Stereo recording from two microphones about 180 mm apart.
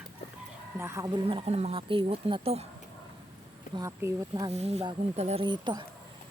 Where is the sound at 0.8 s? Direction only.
15° right (ahead or behind); by 2.6 s 35° right (ahead or behind).